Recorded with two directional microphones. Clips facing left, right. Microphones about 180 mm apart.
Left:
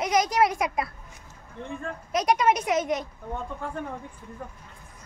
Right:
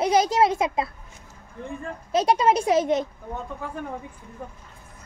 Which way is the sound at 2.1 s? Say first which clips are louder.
Right 3 dB; 30° right (ahead or behind).